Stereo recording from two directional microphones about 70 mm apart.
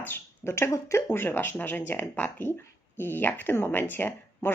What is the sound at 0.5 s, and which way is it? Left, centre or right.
Speech, left.